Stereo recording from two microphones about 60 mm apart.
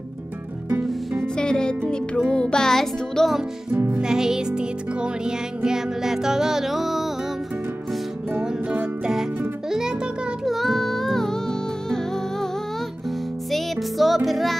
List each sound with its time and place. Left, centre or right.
0.7 s music: right
1.2 s music: centre
4.0 s music: centre
9.0 s music: centre
13.5 s music: centre